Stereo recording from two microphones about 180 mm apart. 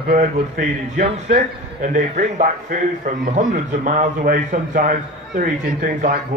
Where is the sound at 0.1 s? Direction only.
50° right (ahead or behind).